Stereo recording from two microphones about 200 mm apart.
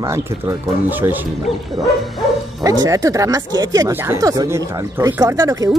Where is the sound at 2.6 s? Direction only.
20° right (ahead or behind).